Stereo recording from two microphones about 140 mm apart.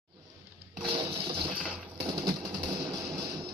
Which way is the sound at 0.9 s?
40° right (ahead or behind).